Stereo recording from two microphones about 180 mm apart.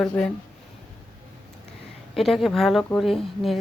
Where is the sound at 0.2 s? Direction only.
5° left (ahead or behind).